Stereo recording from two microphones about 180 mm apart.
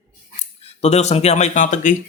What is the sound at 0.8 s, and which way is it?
Speech, 35° left (ahead or behind).